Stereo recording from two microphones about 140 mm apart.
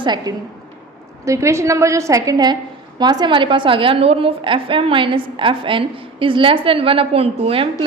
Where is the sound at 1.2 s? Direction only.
20° right (ahead or behind).